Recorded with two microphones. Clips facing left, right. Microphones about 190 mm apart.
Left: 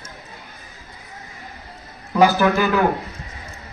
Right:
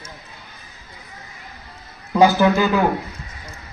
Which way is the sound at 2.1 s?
20° right (ahead or behind).